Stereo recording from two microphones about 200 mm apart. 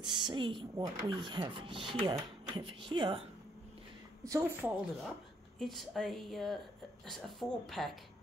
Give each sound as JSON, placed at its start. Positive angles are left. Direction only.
{"t": 0.0, "sound": "speech", "side_deg": -20}
{"t": 4.2, "sound": "a woman's voice", "side_deg": -10}